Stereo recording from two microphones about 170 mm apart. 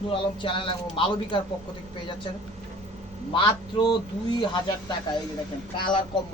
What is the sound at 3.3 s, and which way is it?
Speech, 25° left (ahead or behind).